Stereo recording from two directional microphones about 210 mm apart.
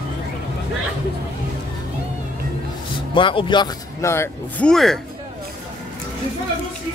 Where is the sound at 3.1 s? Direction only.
25° left (ahead or behind); by 5.0 s centre (ahead or behind).